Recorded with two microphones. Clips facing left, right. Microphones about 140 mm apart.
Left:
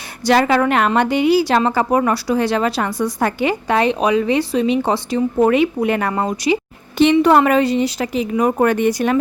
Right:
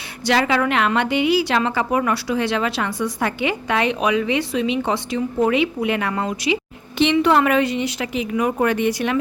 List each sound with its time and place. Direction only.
0.3 s a woman's voice: 45° left (ahead or behind)